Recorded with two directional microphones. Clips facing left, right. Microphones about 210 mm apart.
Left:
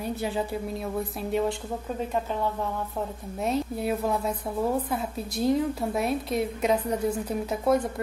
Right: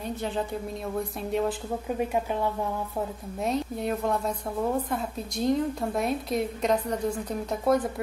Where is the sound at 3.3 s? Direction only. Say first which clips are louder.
Left 1 dB; centre (ahead or behind).